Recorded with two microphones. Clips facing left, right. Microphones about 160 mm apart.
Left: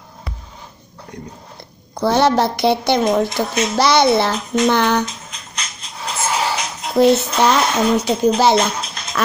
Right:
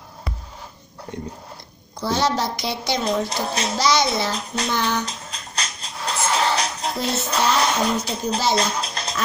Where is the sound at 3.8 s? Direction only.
60° left (ahead or behind).